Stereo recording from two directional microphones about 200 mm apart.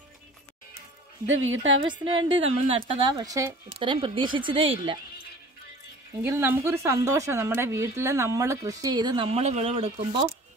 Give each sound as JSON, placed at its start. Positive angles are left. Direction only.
{"t": 1.2, "sound": "speech", "side_deg": -70}
{"t": 1.9, "sound": "speech", "side_deg": -25}
{"t": 3.6, "sound": "speech", "side_deg": -25}
{"t": 6.2, "sound": "a woman's voice", "side_deg": -10}